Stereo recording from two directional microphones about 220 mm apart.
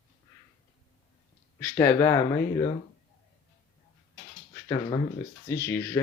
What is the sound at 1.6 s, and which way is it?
Speech, 10° left (ahead or behind).